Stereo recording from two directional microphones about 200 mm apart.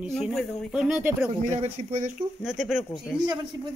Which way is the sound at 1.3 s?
35° right (ahead or behind).